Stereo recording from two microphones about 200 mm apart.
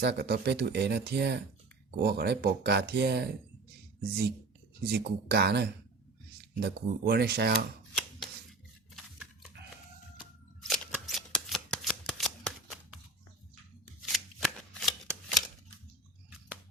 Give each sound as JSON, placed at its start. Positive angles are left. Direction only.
{"t": 0.0, "sound": "speech", "side_deg": -55}
{"t": 4.8, "sound": "speech", "side_deg": -50}
{"t": 9.0, "sound": "a sound", "side_deg": 0}
{"t": 10.2, "sound": "shuffling cards", "side_deg": 5}
{"t": 14.0, "sound": "shuffling cards", "side_deg": 0}